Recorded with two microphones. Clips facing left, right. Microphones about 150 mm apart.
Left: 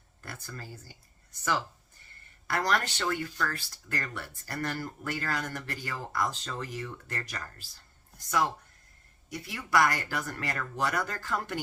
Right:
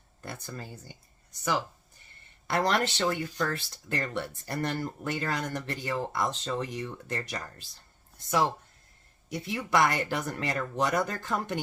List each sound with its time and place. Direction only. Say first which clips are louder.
0.2 s speech: right 4 dB; 20° right (ahead or behind)
2.5 s speech: right 3 dB; 25° right (ahead or behind)